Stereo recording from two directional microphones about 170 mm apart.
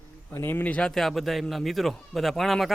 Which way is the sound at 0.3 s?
10° left (ahead or behind).